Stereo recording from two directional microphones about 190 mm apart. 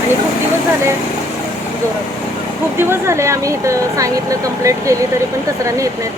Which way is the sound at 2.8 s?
15° right (ahead or behind).